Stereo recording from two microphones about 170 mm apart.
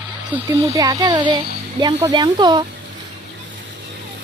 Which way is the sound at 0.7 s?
20° right (ahead or behind).